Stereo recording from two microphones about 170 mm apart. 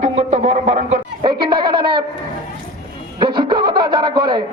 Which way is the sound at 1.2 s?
30° right (ahead or behind).